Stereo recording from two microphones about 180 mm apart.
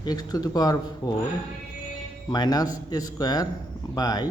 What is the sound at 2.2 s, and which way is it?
A man's voice, 25° left (ahead or behind).